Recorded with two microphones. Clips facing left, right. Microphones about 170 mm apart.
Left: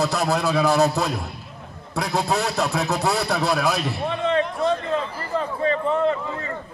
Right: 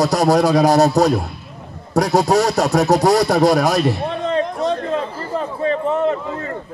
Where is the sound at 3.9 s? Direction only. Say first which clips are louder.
Right 3 dB; 40° right (ahead or behind).